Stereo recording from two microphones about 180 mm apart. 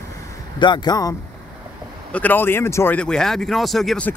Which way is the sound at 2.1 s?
10° left (ahead or behind).